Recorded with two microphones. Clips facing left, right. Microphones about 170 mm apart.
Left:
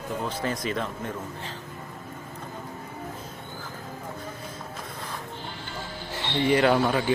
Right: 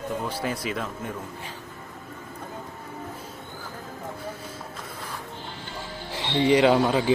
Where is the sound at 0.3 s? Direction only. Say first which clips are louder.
Even; 10° right (ahead or behind).